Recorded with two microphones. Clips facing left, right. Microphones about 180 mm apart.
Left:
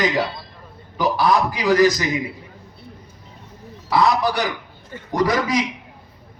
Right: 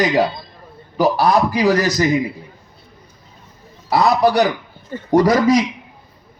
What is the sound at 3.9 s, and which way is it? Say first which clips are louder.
Speech: right 4 dB; 40° right (ahead or behind).